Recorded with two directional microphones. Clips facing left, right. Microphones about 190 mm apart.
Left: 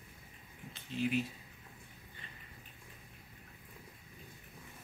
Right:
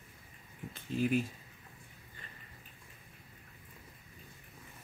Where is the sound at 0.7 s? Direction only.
45° right (ahead or behind).